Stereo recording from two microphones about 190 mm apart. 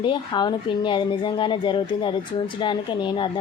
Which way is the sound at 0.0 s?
25° left (ahead or behind).